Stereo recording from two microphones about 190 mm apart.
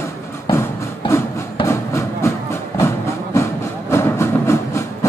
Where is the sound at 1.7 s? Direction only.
15° left (ahead or behind).